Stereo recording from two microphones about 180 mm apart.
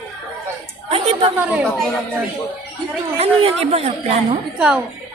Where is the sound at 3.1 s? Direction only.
35° right (ahead or behind).